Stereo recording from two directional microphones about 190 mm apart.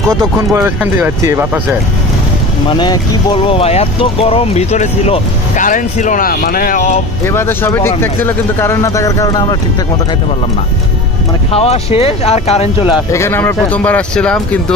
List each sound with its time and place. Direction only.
0.1 s speech: 15° right (ahead or behind)
2.8 s speech: 25° left (ahead or behind); by 7.0 s 40° left (ahead or behind)
7.2 s speech: 10° left (ahead or behind)
11.5 s speech: 30° left (ahead or behind)
13.1 s speech: 15° left (ahead or behind)